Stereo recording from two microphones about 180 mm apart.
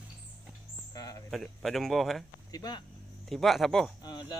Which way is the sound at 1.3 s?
Centre (ahead or behind).